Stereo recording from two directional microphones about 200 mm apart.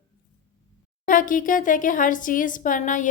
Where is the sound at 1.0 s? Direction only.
40° left (ahead or behind).